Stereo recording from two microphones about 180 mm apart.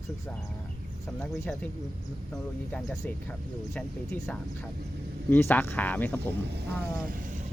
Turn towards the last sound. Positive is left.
turn(degrees=-45)  # may be behind; listen again after turning